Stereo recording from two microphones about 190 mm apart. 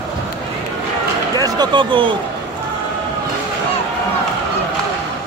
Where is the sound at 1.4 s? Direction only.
20° right (ahead or behind).